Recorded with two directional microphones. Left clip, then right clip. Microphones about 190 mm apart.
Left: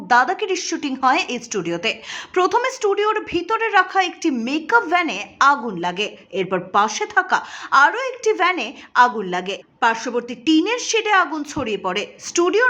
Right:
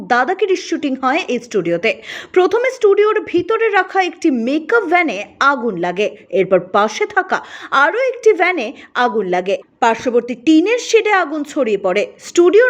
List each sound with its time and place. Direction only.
0.1 s a woman's voice: 15° right (ahead or behind)